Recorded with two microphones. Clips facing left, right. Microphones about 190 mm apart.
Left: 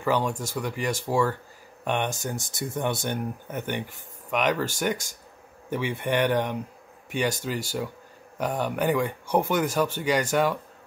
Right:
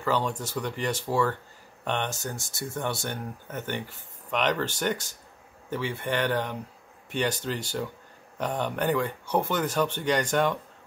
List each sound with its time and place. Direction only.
0.0 s speech: 15° left (ahead or behind)